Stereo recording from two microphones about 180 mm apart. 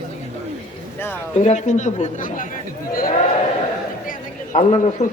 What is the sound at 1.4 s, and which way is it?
A man's voice, 40° left (ahead or behind).